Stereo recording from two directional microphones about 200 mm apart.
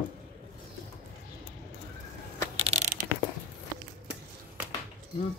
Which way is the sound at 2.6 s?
40° right (ahead or behind).